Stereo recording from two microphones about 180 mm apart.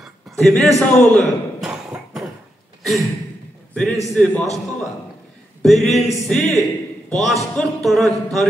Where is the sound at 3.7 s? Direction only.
5° left (ahead or behind).